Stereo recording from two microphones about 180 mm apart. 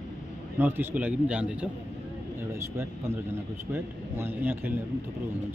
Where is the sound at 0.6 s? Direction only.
10° right (ahead or behind).